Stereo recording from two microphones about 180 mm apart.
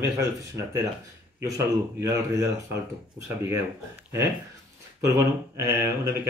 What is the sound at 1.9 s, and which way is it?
Speech, 15° right (ahead or behind).